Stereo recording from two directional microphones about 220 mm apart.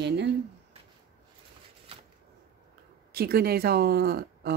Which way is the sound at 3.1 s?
45° right (ahead or behind).